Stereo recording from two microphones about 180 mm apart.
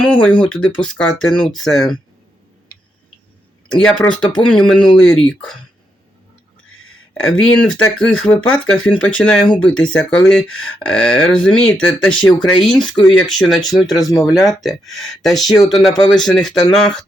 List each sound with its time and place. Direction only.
0.0 s speech: 5° left (ahead or behind)
3.7 s speech: 5° left (ahead or behind)
7.1 s speech: 5° left (ahead or behind)
12.5 s speech: 25° left (ahead or behind)
13.0 s speech: 5° left (ahead or behind)
13.6 s speech: 20° left (ahead or behind)
14.3 s speech: centre (ahead or behind)